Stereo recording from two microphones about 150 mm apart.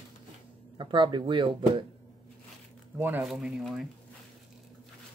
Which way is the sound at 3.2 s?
Centre (ahead or behind).